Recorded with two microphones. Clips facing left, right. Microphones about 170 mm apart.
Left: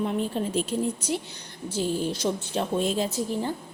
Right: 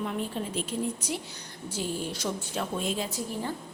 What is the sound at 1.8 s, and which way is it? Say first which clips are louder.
A woman's voice: left 6 dB; 25° left (ahead or behind).